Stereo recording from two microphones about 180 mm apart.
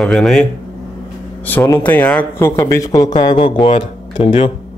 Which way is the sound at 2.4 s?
15° left (ahead or behind).